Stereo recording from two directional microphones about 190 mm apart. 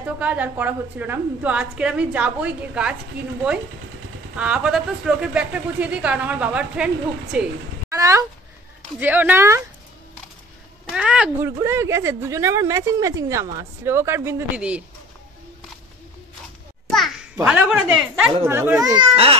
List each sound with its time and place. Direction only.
0.0 s speech: 10° right (ahead or behind)
4.4 s speech: 5° right (ahead or behind)
7.9 s speech: 15° right (ahead or behind)
10.9 s speech: 5° right (ahead or behind)
17.5 s speech: 5° right (ahead or behind); by 19.3 s 25° right (ahead or behind)